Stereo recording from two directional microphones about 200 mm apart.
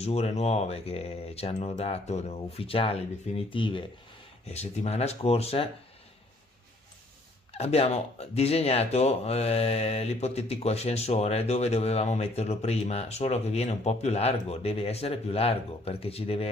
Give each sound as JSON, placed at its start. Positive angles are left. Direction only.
{"t": 0.0, "sound": "speech", "side_deg": 30}
{"t": 7.5, "sound": "speech", "side_deg": 30}